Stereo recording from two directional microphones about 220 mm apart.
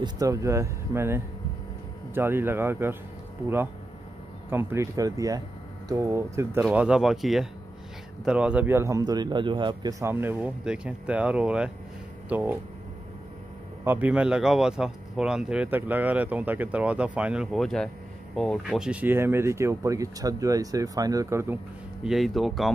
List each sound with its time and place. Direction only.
0.0 s a man's voice: 15° right (ahead or behind)
4.5 s a man's voice: 10° right (ahead or behind)
13.8 s a man's voice: 5° right (ahead or behind)
22.0 s speech: centre (ahead or behind)